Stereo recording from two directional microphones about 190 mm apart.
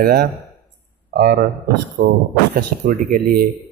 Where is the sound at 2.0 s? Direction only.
60° right (ahead or behind).